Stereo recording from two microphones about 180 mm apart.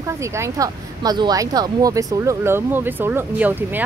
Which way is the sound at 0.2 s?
15° right (ahead or behind).